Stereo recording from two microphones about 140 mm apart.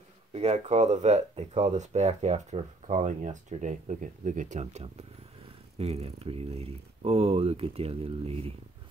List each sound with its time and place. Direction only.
0.3 s speech: 50° right (ahead or behind)